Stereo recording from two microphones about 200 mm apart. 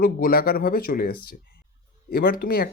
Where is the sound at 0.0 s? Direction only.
45° left (ahead or behind).